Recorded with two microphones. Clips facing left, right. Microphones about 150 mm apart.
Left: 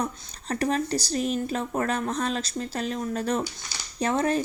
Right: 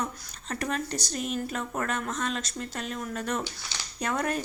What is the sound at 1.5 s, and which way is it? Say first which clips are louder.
Speech: left 4 dB; 35° left (ahead or behind).